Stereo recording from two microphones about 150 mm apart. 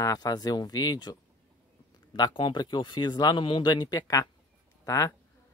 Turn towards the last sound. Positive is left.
turn(degrees=20)  # may be behind; listen again after turning